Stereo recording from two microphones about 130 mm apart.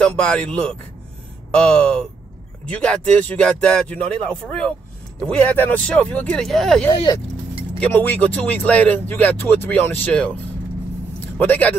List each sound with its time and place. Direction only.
0.0 s speech: 10° left (ahead or behind)
6.9 s speech: 35° left (ahead or behind)
7.8 s speech: 15° left (ahead or behind)
11.1 s vehicle: 15° left (ahead or behind)